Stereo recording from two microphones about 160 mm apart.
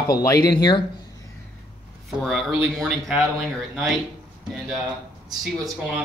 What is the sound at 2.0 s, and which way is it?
Speech, centre (ahead or behind).